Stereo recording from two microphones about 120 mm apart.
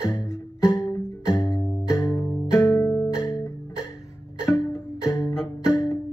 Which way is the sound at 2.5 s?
20° left (ahead or behind).